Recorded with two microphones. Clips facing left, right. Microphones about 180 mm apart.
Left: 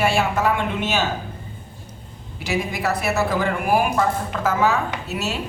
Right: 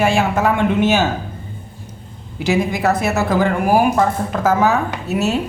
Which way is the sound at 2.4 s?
45° right (ahead or behind).